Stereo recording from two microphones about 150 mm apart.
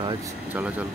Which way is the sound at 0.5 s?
10° right (ahead or behind).